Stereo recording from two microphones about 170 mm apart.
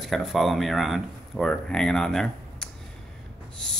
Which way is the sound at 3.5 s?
5° left (ahead or behind).